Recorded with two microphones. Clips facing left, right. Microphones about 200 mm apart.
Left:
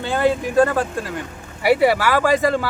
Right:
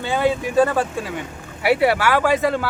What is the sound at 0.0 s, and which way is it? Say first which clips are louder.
Speech: left 1 dB; centre (ahead or behind).